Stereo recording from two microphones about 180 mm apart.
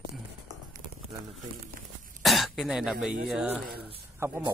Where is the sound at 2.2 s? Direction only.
Centre (ahead or behind).